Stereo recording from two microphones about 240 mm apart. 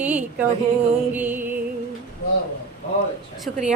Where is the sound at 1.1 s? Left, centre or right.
Centre.